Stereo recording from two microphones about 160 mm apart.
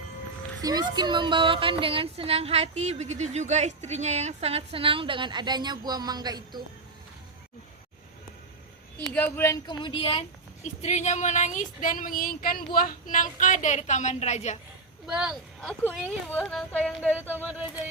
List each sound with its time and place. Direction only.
0.6 s a woman's voice: 25° right (ahead or behind)
9.1 s speech: 10° left (ahead or behind); by 14.6 s 45° left (ahead or behind)
15.0 s speech: 5° right (ahead or behind)
16.0 s speech: 10° left (ahead or behind)